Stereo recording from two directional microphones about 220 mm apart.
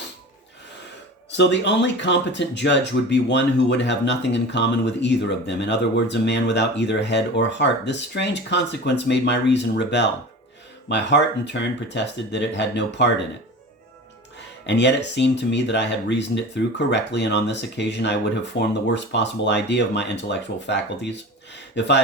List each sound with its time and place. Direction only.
1.3 s speech: 50° left (ahead or behind)
14.3 s speech: 50° left (ahead or behind)